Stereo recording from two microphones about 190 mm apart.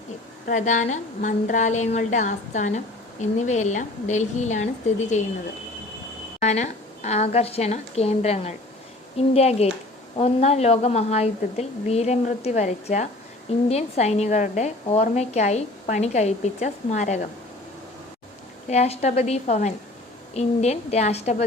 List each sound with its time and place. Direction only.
0.4 s a woman's voice: 40° left (ahead or behind)
6.4 s a woman's voice: 35° left (ahead or behind)
18.7 s a woman's voice: 35° left (ahead or behind)